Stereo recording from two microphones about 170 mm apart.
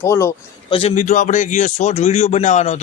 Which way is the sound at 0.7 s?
35° left (ahead or behind).